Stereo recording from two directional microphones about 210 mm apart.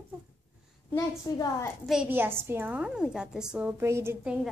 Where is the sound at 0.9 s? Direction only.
15° left (ahead or behind).